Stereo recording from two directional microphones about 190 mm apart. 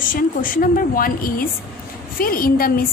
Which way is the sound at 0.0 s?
45° left (ahead or behind).